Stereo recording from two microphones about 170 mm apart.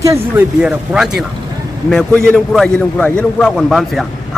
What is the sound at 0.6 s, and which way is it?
A man's voice, 5° right (ahead or behind).